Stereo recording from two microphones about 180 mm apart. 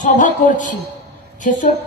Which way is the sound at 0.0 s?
45° left (ahead or behind).